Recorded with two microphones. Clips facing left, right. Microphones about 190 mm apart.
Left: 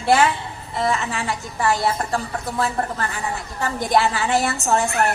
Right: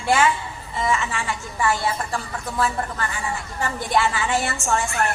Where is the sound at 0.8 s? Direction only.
40° left (ahead or behind).